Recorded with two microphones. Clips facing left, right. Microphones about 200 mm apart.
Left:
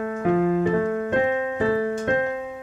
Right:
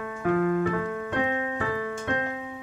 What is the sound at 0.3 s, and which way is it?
Piano, 25° left (ahead or behind).